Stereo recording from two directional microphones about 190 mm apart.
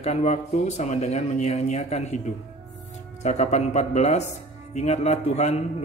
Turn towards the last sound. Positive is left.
turn(degrees=35)  # may be behind; listen again after turning